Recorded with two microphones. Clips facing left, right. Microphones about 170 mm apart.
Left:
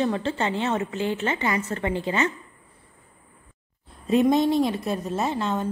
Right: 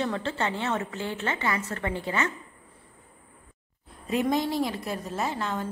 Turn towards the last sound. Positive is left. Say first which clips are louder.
# left 4 dB
turn(degrees=20)  # may be behind; listen again after turning